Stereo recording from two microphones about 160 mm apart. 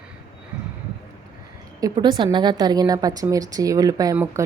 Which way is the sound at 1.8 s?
25° right (ahead or behind).